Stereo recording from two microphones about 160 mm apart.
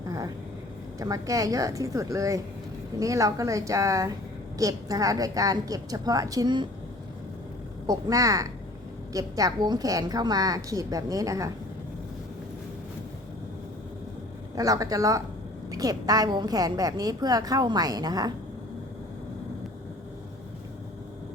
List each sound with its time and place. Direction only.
0.9 s a woman's voice: 20° right (ahead or behind)
7.9 s a woman's voice: 20° right (ahead or behind)
14.5 s a woman's voice: 20° right (ahead or behind)